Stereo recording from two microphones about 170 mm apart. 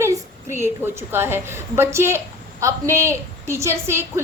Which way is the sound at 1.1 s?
15° right (ahead or behind).